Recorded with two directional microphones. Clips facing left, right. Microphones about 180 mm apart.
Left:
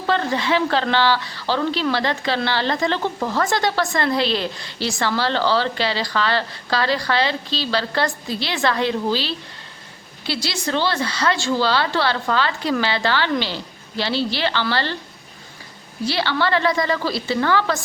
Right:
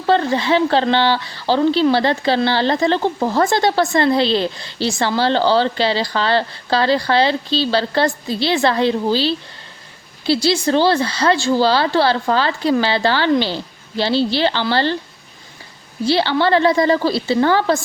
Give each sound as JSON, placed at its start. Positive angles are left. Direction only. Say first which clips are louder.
{"t": 0.1, "sound": "speech", "louder": "right 5 dB", "side_deg": -30}
{"t": 16.0, "sound": "speech", "louder": "right 5 dB", "side_deg": -30}